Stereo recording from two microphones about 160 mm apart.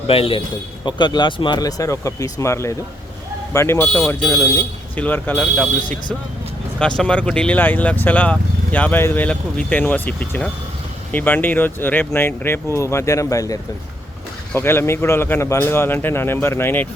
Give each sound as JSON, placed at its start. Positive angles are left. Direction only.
{"t": 0.1, "sound": "a man's voice", "side_deg": 35}
{"t": 4.0, "sound": "speech", "side_deg": 5}
{"t": 6.7, "sound": "speech", "side_deg": 5}